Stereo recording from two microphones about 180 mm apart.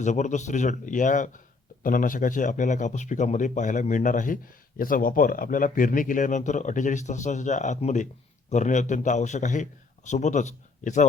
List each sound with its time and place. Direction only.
0.0 s a man's voice: 40° left (ahead or behind)